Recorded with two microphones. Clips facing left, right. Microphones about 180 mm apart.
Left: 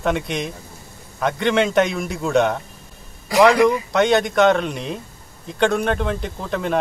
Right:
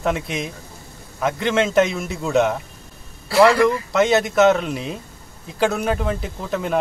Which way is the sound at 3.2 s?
15° left (ahead or behind).